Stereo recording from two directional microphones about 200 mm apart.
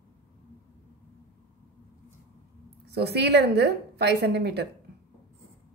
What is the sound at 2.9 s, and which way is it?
A woman's voice, 55° right (ahead or behind).